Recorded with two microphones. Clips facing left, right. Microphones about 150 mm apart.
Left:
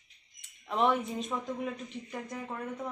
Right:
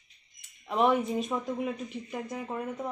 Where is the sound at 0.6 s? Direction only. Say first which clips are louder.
Right 3 dB; 5° right (ahead or behind).